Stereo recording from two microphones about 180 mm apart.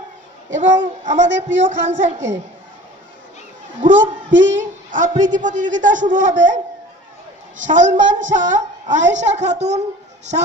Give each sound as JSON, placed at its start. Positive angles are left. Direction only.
{"t": 0.5, "sound": "a woman's voice", "side_deg": -45}
{"t": 3.8, "sound": "a woman's voice", "side_deg": -45}